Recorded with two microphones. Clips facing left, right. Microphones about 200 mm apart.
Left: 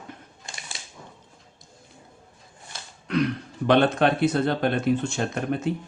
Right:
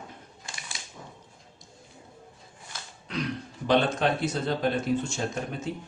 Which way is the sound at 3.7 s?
60° left (ahead or behind).